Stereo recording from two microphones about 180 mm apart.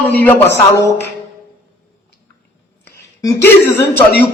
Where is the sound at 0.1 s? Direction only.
10° left (ahead or behind).